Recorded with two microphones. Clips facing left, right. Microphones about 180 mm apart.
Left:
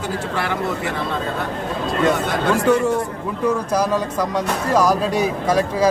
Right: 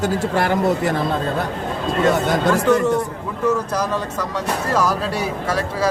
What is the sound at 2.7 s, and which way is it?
Speech, 15° left (ahead or behind).